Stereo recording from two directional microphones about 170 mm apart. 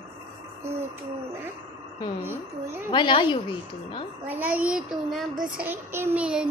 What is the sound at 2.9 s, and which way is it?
Speech, 30° left (ahead or behind).